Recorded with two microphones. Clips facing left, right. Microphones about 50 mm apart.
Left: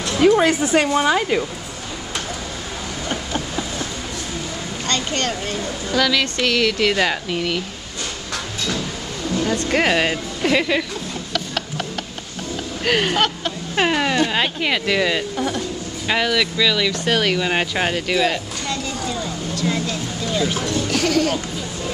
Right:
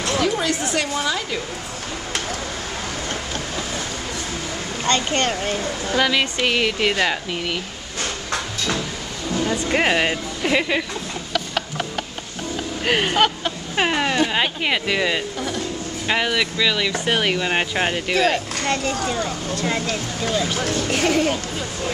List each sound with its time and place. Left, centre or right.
0.2 s speech: left
0.6 s speech: centre
0.9 s speech: left
4.8 s speech: right
5.3 s speech: centre
7.0 s speech: centre
9.3 s speech: centre
12.8 s speech: centre
15.3 s speech: centre
16.1 s speech: centre
18.1 s speech: right
19.6 s speech: right